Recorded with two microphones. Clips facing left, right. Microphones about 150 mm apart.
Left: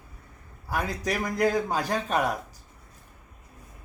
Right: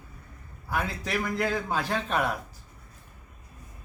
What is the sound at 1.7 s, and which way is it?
Speech, 40° left (ahead or behind).